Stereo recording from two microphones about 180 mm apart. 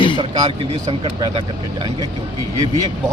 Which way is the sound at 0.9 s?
30° right (ahead or behind).